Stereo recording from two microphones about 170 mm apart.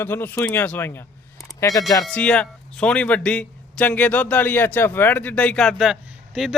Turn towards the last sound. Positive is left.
turn(degrees=-5)  # may be behind; listen again after turning